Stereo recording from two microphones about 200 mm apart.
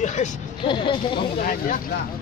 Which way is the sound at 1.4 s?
45° left (ahead or behind).